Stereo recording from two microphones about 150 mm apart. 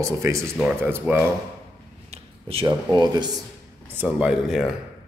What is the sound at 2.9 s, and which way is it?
Speech, 30° right (ahead or behind).